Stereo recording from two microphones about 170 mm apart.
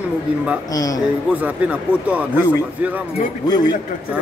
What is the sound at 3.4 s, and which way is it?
Speech, 25° left (ahead or behind).